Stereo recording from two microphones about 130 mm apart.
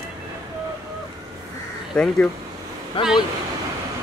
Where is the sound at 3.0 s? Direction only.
45° left (ahead or behind).